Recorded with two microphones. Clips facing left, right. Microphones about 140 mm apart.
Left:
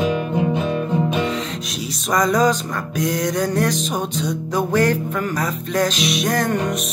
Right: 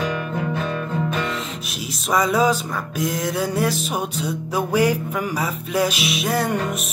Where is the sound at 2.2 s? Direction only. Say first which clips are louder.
Left 1 dB; 5° right (ahead or behind).